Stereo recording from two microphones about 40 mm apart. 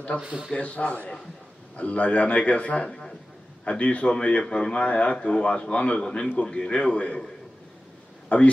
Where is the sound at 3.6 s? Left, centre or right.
Left.